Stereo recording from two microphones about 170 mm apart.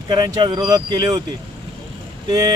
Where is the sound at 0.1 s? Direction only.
25° right (ahead or behind).